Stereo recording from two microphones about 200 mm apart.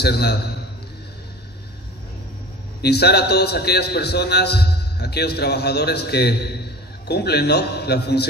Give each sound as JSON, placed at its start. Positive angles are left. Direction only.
{"t": 0.0, "sound": "a man's voice", "side_deg": 55}
{"t": 2.8, "sound": "a man's voice", "side_deg": 55}